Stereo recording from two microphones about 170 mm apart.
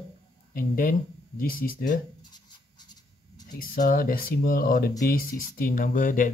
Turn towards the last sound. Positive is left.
turn(degrees=55)  # may be behind; listen again after turning